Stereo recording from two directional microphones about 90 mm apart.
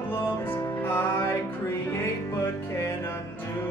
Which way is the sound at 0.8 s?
25° left (ahead or behind).